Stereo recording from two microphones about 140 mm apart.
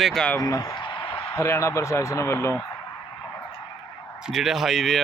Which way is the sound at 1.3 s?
20° left (ahead or behind).